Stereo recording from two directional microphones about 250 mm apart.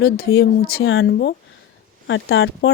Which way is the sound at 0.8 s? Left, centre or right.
Left.